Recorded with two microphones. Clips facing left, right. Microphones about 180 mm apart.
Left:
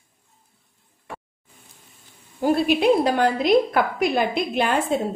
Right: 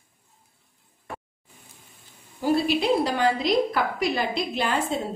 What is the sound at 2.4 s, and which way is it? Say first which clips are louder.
A woman's voice: left 3 dB; 55° left (ahead or behind).